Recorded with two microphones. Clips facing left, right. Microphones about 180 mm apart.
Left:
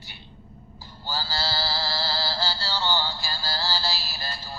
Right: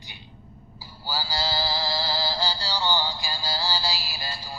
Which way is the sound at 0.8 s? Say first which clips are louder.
Right 1 dB; 10° right (ahead or behind).